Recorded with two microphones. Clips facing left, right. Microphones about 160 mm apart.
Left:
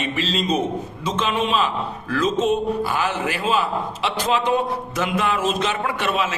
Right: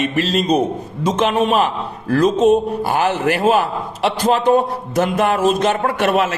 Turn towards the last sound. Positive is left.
turn(degrees=-50)  # may be behind; listen again after turning